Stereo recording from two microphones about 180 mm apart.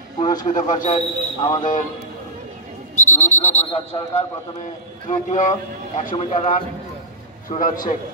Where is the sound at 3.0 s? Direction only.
40° left (ahead or behind).